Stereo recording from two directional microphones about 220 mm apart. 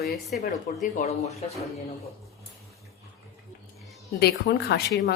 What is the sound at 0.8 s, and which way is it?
Speech, 30° left (ahead or behind).